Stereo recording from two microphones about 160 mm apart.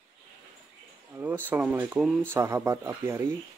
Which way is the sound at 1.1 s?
15° right (ahead or behind).